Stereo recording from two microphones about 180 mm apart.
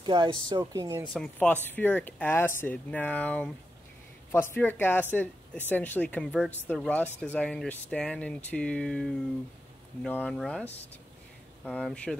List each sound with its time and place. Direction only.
0.0 s speech: 25° right (ahead or behind)
1.1 s speech: 5° left (ahead or behind)